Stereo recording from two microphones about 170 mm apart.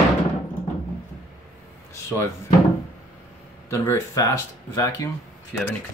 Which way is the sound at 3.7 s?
15° left (ahead or behind).